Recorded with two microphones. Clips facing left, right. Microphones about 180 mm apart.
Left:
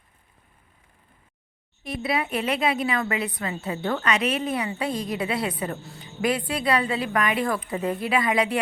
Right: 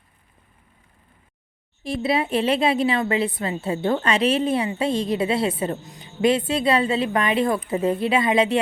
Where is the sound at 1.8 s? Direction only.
30° right (ahead or behind).